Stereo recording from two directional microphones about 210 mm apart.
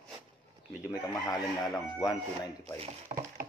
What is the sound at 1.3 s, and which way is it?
Speech, 15° left (ahead or behind).